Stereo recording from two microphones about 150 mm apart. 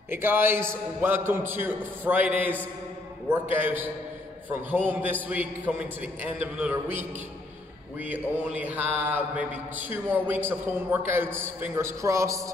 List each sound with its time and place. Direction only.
0.1 s a man's voice: 15° right (ahead or behind)